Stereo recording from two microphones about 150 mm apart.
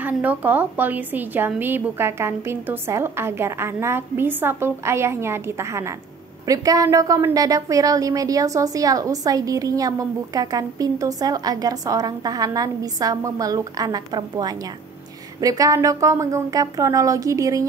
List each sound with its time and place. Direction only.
0.0 s a woman's voice: 10° right (ahead or behind)